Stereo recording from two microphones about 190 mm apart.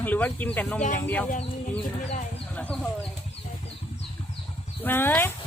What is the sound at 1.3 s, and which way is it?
Speech, 40° left (ahead or behind).